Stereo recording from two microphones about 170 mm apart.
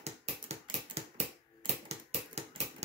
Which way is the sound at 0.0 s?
40° right (ahead or behind).